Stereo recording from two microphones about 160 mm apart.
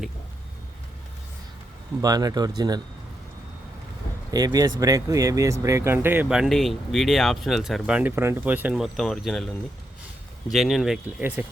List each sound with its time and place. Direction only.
2.0 s speech: 25° right (ahead or behind)
4.3 s speech: 25° right (ahead or behind); by 9.5 s 5° left (ahead or behind)
10.5 s speech: centre (ahead or behind)
11.2 s speech: 15° right (ahead or behind)